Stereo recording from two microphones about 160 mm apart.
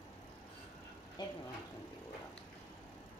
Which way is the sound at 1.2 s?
25° left (ahead or behind).